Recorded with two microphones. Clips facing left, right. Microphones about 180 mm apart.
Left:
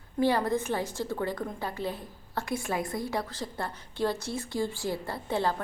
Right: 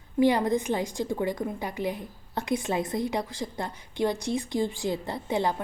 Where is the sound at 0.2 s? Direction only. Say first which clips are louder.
Right 3 dB; 15° right (ahead or behind).